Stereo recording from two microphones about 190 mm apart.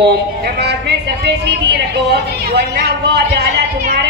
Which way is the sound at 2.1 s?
60° right (ahead or behind).